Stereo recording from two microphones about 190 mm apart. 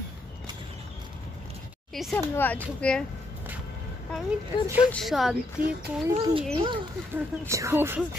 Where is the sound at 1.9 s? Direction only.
Centre (ahead or behind).